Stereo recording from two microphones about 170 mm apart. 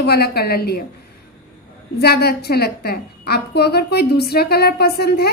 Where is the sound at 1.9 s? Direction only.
70° left (ahead or behind).